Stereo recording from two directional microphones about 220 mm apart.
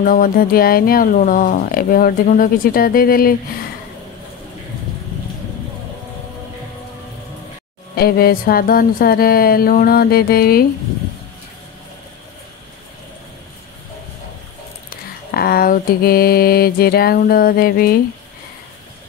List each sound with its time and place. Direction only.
0.0 s speech: 40° left (ahead or behind)
7.9 s mantra: 45° left (ahead or behind)
14.9 s mantra: 45° left (ahead or behind)